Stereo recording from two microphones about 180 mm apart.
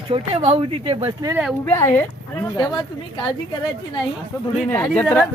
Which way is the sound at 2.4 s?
20° left (ahead or behind).